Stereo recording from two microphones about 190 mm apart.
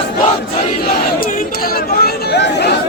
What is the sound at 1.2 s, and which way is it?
Chatter, 45° left (ahead or behind).